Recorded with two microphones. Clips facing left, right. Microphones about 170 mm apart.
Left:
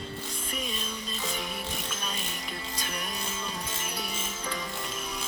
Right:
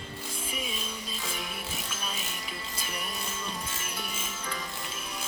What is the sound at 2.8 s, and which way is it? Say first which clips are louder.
Music: left 1 dB; 5° right (ahead or behind).